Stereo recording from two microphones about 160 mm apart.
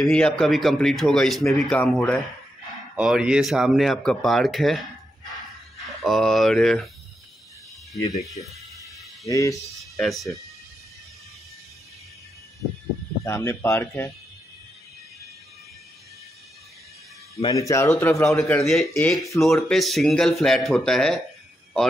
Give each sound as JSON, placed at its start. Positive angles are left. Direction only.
{"t": 0.0, "sound": "speech", "side_deg": 5}
{"t": 3.0, "sound": "speech", "side_deg": -5}
{"t": 6.0, "sound": "speech", "side_deg": 0}
{"t": 8.4, "sound": "speech", "side_deg": 45}
{"t": 9.2, "sound": "a man's voice", "side_deg": 20}
{"t": 9.8, "sound": "speech", "side_deg": 0}
{"t": 13.2, "sound": "speech", "side_deg": 15}
{"t": 17.4, "sound": "a man's voice", "side_deg": 25}
{"t": 18.6, "sound": "speech", "side_deg": 0}